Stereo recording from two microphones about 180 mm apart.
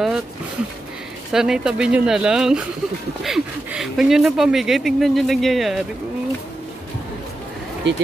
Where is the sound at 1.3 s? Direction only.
5° right (ahead or behind).